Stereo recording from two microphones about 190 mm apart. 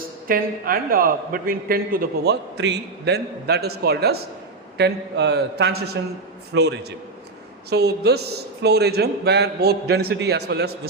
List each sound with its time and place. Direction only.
0.3 s a man's voice: 50° right (ahead or behind)